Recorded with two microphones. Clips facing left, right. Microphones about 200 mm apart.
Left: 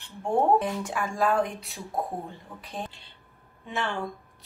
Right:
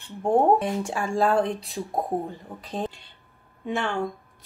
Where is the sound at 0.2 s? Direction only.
30° right (ahead or behind).